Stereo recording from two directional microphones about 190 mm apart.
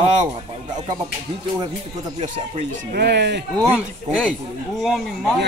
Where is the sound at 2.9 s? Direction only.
60° right (ahead or behind).